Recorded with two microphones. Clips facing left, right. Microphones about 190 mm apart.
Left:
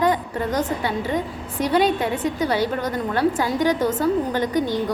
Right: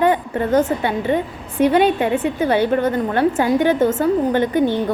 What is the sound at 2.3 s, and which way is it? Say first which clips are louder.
A woman's voice: right 5 dB; 55° right (ahead or behind).